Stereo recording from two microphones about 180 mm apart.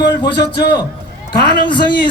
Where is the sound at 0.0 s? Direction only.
70° left (ahead or behind).